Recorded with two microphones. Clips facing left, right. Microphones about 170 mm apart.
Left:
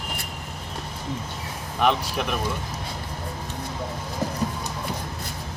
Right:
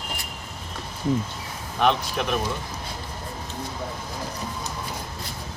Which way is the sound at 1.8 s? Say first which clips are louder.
Even; 5° left (ahead or behind).